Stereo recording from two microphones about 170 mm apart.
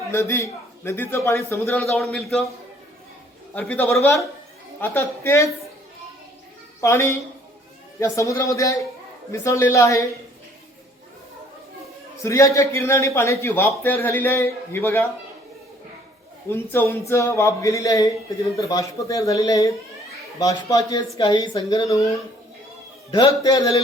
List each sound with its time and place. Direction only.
0.1 s a man's voice: 15° left (ahead or behind)
1.8 s a man's voice: centre (ahead or behind)
3.5 s a man's voice: 10° left (ahead or behind)
6.8 s a man's voice: 15° left (ahead or behind)
12.2 s a man's voice: 20° left (ahead or behind)
16.5 s a man's voice: 15° left (ahead or behind)
23.1 s speech: 25° left (ahead or behind)